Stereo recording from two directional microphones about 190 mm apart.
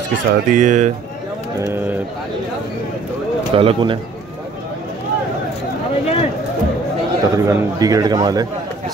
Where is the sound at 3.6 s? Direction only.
30° right (ahead or behind).